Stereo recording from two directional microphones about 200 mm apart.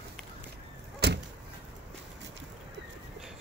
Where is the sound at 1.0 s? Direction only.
55° right (ahead or behind).